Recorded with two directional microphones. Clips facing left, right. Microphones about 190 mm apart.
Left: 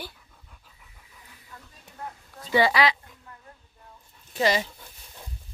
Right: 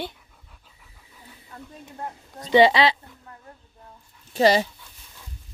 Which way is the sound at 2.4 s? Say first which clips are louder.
Right 5 dB; 20° right (ahead or behind).